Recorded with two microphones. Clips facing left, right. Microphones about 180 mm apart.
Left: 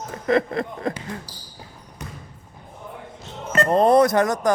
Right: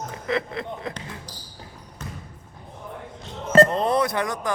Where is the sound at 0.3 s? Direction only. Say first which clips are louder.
Left 7 dB; 45° left (ahead or behind).